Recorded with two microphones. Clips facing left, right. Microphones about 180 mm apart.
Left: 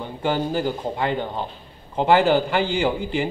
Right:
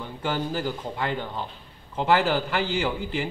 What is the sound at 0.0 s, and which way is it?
A man's voice, 20° left (ahead or behind).